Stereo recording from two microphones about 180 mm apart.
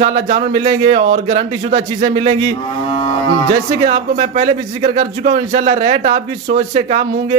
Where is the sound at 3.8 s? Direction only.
40° right (ahead or behind).